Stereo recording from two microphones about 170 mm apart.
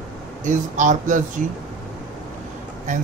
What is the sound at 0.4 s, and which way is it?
Speech, 45° right (ahead or behind).